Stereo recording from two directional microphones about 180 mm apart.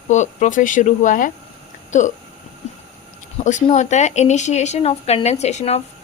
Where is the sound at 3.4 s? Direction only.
40° left (ahead or behind).